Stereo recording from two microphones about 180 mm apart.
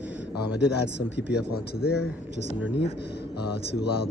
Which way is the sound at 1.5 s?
60° left (ahead or behind).